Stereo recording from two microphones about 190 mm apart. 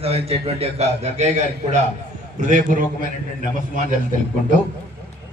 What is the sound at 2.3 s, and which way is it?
Speech, 40° right (ahead or behind).